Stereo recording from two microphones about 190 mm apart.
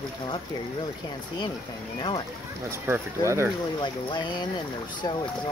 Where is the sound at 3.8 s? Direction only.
25° left (ahead or behind).